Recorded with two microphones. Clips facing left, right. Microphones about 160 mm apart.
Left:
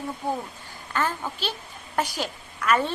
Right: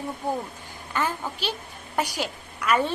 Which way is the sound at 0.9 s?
15° right (ahead or behind).